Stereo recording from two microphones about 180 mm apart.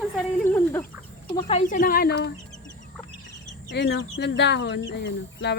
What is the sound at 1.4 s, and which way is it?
Speech, 35° left (ahead or behind).